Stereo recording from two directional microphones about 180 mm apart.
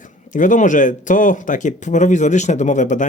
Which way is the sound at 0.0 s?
45° left (ahead or behind).